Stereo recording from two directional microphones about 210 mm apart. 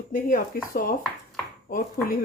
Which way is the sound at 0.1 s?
40° left (ahead or behind).